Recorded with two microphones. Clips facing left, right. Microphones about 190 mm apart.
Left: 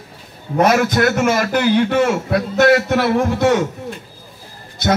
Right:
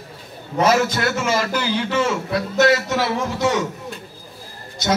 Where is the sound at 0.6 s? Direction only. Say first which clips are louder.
Left 3 dB; 55° left (ahead or behind).